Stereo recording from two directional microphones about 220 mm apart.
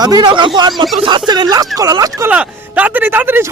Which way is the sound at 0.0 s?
20° right (ahead or behind).